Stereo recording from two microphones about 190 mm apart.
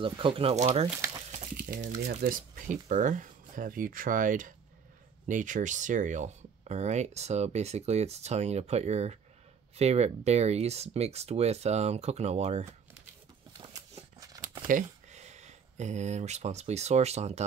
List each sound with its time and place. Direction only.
0.0 s speech: 30° right (ahead or behind)
0.8 s speech: 15° right (ahead or behind)
1.3 s a sound: 40° right (ahead or behind)
1.9 s speech: 45° right (ahead or behind)
13.6 s a sound: 20° right (ahead or behind)
14.7 s speech: 40° right (ahead or behind)